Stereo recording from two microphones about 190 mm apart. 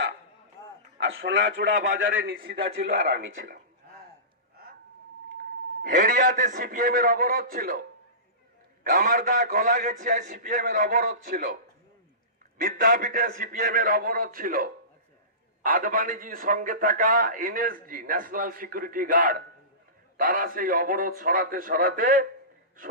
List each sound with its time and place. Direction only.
0.6 s throat clearing: 15° left (ahead or behind)
0.9 s a man's voice: 70° right (ahead or behind)
2.2 s a man's voice: 55° right (ahead or behind)
5.8 s a man's voice: 45° right (ahead or behind)
8.8 s a man's voice: 45° right (ahead or behind)
12.5 s a man's voice: 45° right (ahead or behind)